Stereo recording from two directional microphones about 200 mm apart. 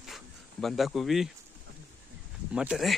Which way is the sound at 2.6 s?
Centre (ahead or behind).